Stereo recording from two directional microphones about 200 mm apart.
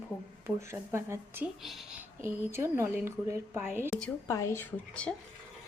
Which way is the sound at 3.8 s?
5° left (ahead or behind).